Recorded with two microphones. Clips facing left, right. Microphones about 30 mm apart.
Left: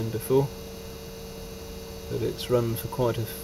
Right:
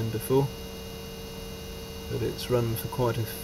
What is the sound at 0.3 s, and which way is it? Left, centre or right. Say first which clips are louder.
Speech: left 2 dB; centre.